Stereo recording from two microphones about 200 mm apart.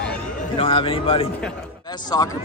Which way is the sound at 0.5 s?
25° left (ahead or behind).